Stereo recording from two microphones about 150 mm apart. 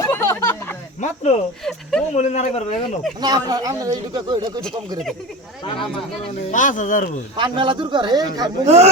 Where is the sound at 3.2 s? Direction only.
25° right (ahead or behind).